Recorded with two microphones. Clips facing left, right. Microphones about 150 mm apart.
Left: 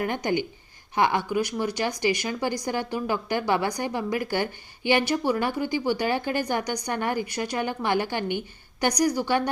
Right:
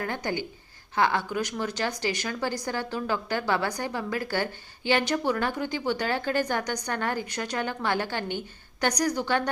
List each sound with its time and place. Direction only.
0.0 s speech: 15° left (ahead or behind)